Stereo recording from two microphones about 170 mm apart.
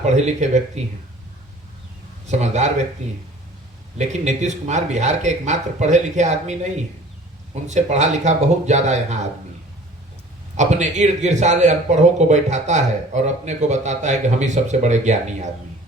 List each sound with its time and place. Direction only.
0.0 s speech: 40° right (ahead or behind)
2.2 s a man's voice: 45° right (ahead or behind)
3.9 s a man's voice: 40° right (ahead or behind)
10.6 s a man's voice: 45° right (ahead or behind)